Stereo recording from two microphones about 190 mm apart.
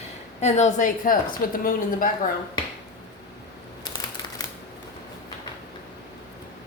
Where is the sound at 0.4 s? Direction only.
35° left (ahead or behind).